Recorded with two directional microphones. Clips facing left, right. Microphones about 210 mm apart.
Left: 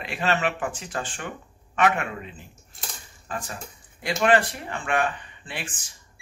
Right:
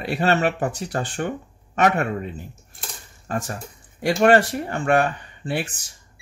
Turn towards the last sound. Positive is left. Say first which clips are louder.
# right 10 dB
turn(degrees=-40)  # may be behind; listen again after turning